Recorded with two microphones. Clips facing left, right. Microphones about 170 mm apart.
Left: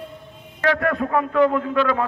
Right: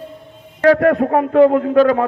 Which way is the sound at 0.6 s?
45° right (ahead or behind).